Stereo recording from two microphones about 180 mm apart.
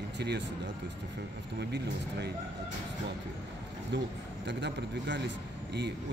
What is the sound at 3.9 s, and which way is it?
A man's voice, 80° right.